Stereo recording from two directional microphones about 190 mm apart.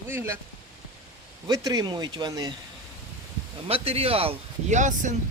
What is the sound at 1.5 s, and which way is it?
Speech, 20° right (ahead or behind).